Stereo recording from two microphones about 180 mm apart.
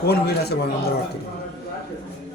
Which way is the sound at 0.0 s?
65° left (ahead or behind).